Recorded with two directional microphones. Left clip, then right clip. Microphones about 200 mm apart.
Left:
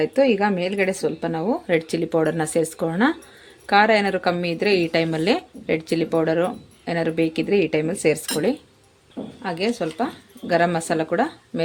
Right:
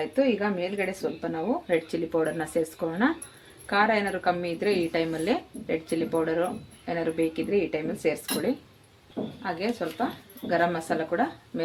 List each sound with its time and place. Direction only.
0.0 s a woman's voice: 60° left (ahead or behind)